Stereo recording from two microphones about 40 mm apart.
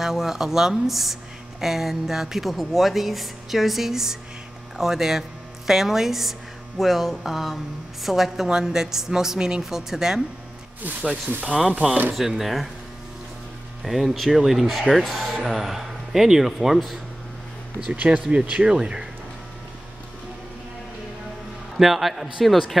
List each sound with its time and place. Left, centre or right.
0.0 s a woman's voice: centre
11.4 s a woman's voice: centre
13.8 s a woman's voice: centre
18.3 s speech: right
21.7 s a woman's voice: centre